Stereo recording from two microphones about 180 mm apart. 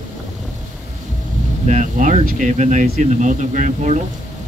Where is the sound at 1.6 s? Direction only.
40° right (ahead or behind).